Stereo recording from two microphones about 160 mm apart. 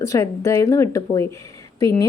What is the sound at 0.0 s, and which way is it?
A woman's voice, 20° left (ahead or behind).